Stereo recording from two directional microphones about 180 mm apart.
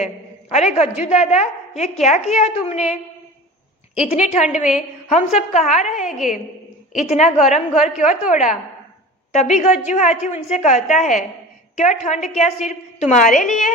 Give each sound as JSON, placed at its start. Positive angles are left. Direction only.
{"t": 0.5, "sound": "a woman's voice", "side_deg": 40}
{"t": 4.1, "sound": "a woman's voice", "side_deg": 40}
{"t": 6.1, "sound": "a woman's voice", "side_deg": 0}
{"t": 7.1, "sound": "a woman's voice", "side_deg": 40}